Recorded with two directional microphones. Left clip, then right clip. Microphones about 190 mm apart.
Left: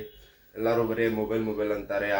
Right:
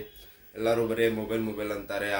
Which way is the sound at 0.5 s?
15° right (ahead or behind).